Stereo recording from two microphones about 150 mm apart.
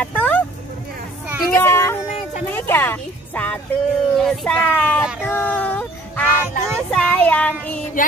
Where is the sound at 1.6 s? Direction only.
15° left (ahead or behind).